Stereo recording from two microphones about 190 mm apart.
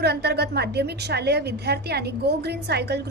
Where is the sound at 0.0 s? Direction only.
60° right (ahead or behind).